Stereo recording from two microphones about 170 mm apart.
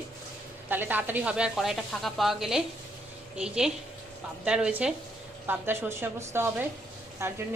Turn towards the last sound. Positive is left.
turn(degrees=-15)  # may be behind; listen again after turning